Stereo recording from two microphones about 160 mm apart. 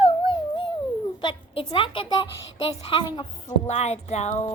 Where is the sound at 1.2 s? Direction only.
30° left (ahead or behind).